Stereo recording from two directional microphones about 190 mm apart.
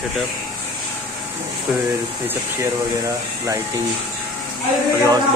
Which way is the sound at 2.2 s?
15° right (ahead or behind).